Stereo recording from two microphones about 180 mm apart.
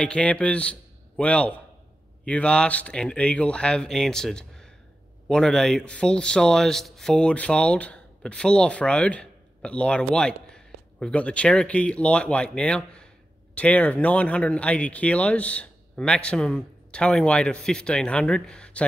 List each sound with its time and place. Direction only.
0.0 s a man's voice: 5° left (ahead or behind)